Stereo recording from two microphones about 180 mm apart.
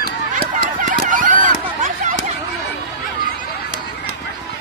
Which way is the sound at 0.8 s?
50° right (ahead or behind).